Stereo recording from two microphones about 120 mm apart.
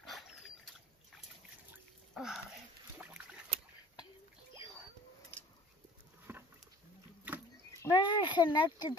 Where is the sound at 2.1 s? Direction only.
5° right (ahead or behind).